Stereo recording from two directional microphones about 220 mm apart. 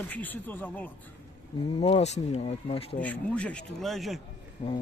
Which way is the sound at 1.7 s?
25° left (ahead or behind).